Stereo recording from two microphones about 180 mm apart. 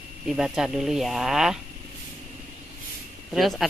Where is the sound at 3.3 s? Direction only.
Centre (ahead or behind).